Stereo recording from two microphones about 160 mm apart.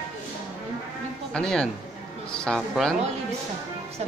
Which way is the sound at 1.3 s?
5° left (ahead or behind).